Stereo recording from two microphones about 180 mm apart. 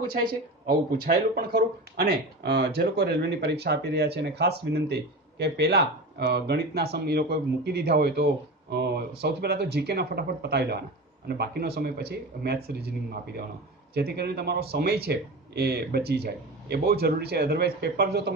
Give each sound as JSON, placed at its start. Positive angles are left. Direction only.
{"t": 0.7, "sound": "speech", "side_deg": -55}